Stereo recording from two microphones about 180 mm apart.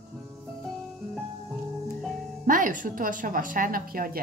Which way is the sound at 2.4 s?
45° right (ahead or behind).